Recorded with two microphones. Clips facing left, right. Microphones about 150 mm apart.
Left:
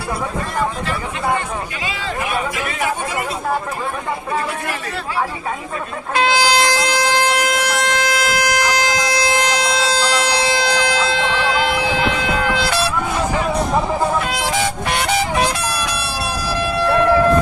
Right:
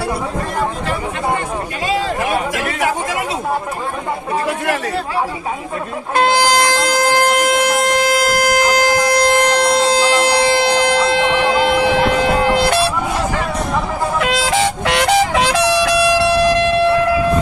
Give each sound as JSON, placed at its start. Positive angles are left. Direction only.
{"t": 1.8, "sound": "speech", "side_deg": -40}
{"t": 2.6, "sound": "speech", "side_deg": -75}
{"t": 6.1, "sound": "music", "side_deg": -50}
{"t": 14.8, "sound": "air horn", "side_deg": -85}